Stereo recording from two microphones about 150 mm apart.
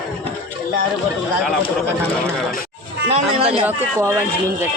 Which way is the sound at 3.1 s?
40° right (ahead or behind).